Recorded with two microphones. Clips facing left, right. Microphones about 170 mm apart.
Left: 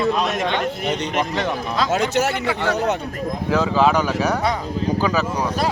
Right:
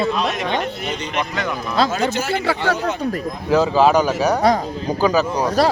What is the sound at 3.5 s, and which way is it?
Speech, 30° right (ahead or behind).